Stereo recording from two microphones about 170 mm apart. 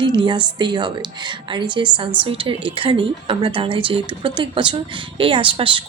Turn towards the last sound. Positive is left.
turn(degrees=-30)  # may be behind; listen again after turning